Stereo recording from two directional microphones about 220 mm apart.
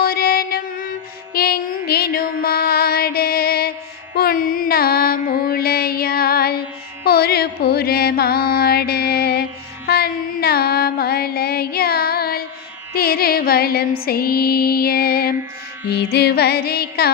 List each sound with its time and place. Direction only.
0.0 s music: 45° left (ahead or behind)
4.1 s mantra: 40° left (ahead or behind)
7.0 s music: 45° left (ahead or behind)